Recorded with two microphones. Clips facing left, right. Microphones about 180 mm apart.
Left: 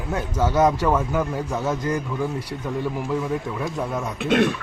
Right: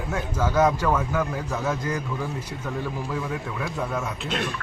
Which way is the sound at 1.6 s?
35° left (ahead or behind).